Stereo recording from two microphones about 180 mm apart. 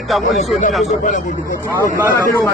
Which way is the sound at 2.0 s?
15° left (ahead or behind).